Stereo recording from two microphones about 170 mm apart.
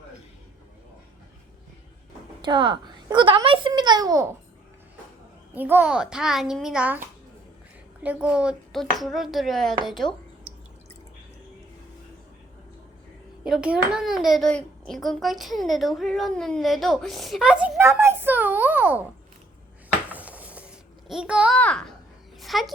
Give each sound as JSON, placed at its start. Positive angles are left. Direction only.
{"t": 2.4, "sound": "a child's voice", "side_deg": -30}
{"t": 5.5, "sound": "a child's voice", "side_deg": -10}
{"t": 8.0, "sound": "a child's voice", "side_deg": -5}
{"t": 13.4, "sound": "a child's voice", "side_deg": -5}
{"t": 20.1, "sound": "a sound", "side_deg": -10}
{"t": 21.5, "sound": "a child's voice", "side_deg": 5}
{"t": 22.4, "sound": "a sound", "side_deg": 0}